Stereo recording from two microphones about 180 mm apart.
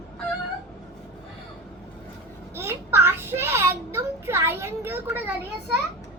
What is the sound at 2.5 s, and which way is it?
A child's voice, 15° right (ahead or behind).